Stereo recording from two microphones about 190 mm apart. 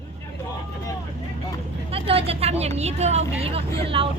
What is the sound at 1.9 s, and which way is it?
Vehicle, 30° right (ahead or behind).